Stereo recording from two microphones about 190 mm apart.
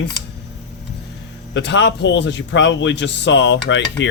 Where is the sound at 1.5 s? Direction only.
65° left (ahead or behind).